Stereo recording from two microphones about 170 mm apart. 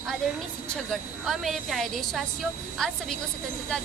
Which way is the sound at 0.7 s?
Centre (ahead or behind).